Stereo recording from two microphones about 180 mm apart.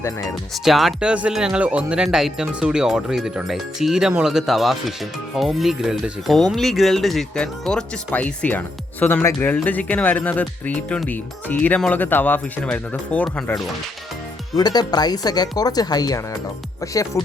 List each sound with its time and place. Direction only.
0.6 s speech: centre (ahead or behind)
14.5 s speech: 20° left (ahead or behind)